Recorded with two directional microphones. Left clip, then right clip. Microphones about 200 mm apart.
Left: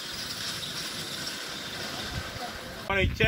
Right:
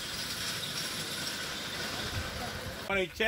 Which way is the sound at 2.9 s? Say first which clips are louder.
Left 4 dB; 55° right (ahead or behind).